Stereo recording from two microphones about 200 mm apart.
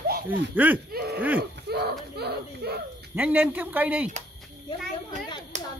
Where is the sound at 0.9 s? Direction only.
50° right (ahead or behind).